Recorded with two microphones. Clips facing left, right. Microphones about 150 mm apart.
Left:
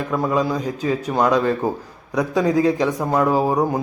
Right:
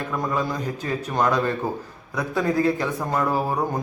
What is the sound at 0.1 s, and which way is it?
A man's voice, 15° left (ahead or behind).